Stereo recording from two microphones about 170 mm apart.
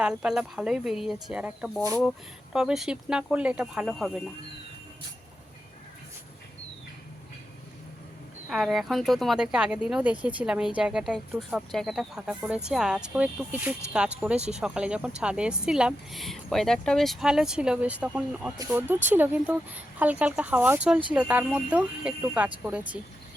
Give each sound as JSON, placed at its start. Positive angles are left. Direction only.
{"t": 0.0, "sound": "speech", "side_deg": -5}
{"t": 8.4, "sound": "speech", "side_deg": 0}